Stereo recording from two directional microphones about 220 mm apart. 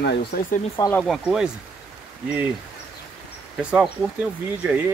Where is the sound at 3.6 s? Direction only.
5° right (ahead or behind).